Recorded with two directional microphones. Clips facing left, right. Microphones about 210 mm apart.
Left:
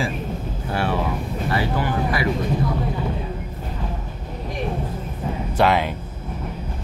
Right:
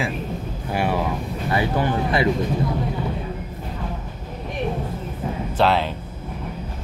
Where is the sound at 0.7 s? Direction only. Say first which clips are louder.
Right 1 dB; 15° right (ahead or behind).